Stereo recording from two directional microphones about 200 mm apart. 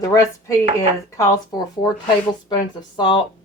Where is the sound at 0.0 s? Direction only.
15° left (ahead or behind).